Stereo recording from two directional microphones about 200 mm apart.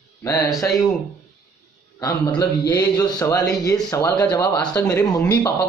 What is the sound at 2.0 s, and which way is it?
Speech, 20° left (ahead or behind).